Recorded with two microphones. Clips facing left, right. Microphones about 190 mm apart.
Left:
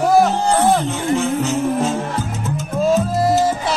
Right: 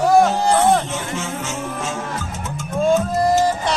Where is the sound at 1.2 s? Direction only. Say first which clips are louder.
Left 8 dB; 35° left (ahead or behind).